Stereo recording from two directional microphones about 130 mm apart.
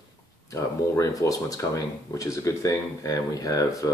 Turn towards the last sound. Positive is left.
turn(degrees=25)  # may be behind; listen again after turning